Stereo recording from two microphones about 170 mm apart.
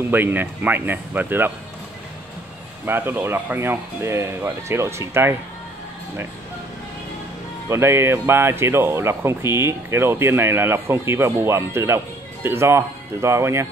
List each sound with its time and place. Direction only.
0.1 s speech: 10° right (ahead or behind)
2.8 s speech: 10° right (ahead or behind)
7.7 s speech: 15° right (ahead or behind)